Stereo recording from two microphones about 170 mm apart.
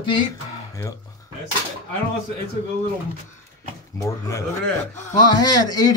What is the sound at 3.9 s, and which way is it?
Speech, 20° left (ahead or behind).